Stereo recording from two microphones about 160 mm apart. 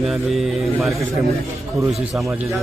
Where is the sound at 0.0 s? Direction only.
Centre (ahead or behind).